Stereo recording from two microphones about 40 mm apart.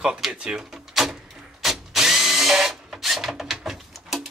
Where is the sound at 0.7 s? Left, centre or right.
Centre.